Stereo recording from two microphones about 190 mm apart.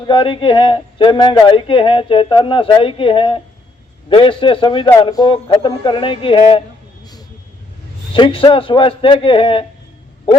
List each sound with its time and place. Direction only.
0.1 s speech: 25° left (ahead or behind)
7.0 s vehicle: 20° left (ahead or behind)
8.1 s speech: 25° left (ahead or behind)